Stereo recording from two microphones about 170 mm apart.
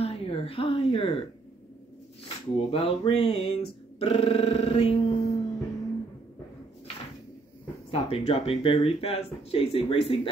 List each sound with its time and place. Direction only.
0.0 s a sound: 35° left (ahead or behind)
2.2 s speech: 35° left (ahead or behind)
7.9 s speech: 35° left (ahead or behind)